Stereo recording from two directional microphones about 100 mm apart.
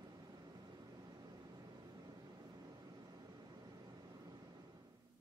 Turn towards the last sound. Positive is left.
turn(degrees=-45)  # may be behind; listen again after turning